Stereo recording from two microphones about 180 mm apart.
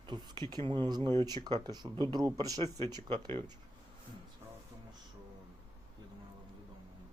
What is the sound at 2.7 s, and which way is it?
Speech, 15° left (ahead or behind).